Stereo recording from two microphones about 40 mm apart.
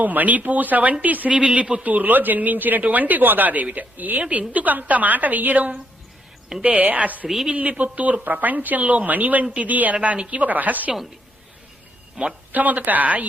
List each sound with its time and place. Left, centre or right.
0.0 s speech: right
1.4 s a woman's voice: right
1.8 s a woman's voice: right
8.2 s a woman's voice: right
12.5 s speech: right